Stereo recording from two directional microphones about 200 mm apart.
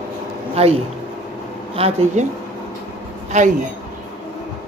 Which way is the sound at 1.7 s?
30° right (ahead or behind).